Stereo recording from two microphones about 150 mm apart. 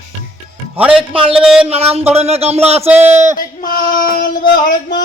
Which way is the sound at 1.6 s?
40° right (ahead or behind).